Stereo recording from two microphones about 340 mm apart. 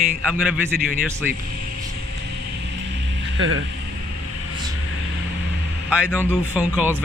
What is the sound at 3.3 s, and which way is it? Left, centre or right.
Speech, right.